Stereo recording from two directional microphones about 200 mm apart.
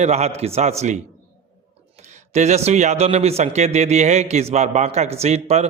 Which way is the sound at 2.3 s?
35° right (ahead or behind).